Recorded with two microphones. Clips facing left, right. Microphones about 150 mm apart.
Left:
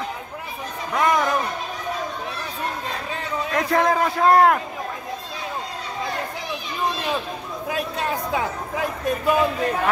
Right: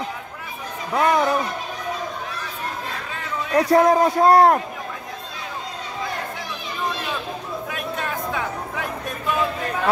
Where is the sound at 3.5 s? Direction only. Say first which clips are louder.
Right 5 dB; 35° right (ahead or behind).